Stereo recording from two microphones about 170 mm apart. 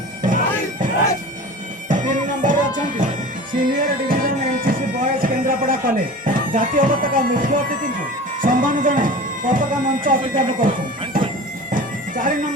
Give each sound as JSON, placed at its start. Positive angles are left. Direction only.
{"t": 0.2, "sound": "bagpipes", "side_deg": -50}
{"t": 1.9, "sound": "music", "side_deg": -50}
{"t": 3.6, "sound": "music", "side_deg": -55}
{"t": 8.4, "sound": "speech", "side_deg": -50}
{"t": 11.7, "sound": "bagpipes", "side_deg": -50}